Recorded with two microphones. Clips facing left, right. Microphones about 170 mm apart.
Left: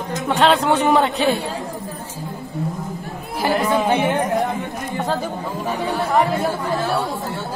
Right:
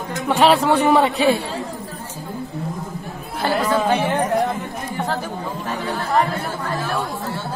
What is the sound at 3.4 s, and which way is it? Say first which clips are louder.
Speech: left 1 dB; 15° left (ahead or behind).